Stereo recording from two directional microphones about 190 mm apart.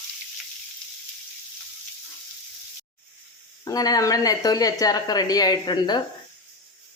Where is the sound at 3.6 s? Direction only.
20° left (ahead or behind).